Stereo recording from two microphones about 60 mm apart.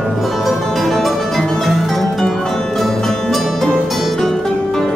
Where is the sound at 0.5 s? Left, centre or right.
Centre.